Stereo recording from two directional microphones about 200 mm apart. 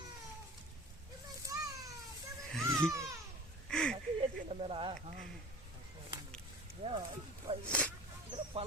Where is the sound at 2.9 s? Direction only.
15° right (ahead or behind).